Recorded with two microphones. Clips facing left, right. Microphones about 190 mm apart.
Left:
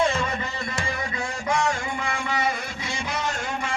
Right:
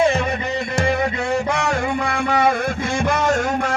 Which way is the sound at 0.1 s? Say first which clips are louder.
Right 6 dB; 65° right (ahead or behind).